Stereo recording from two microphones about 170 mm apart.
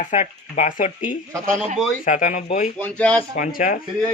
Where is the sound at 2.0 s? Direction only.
50° left (ahead or behind).